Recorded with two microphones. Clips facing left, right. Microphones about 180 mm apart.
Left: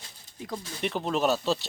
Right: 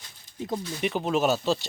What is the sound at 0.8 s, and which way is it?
Speech, 5° right (ahead or behind).